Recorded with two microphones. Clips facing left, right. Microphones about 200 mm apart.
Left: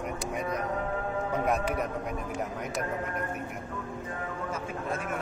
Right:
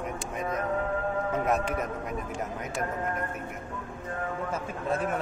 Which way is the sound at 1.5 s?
Centre (ahead or behind).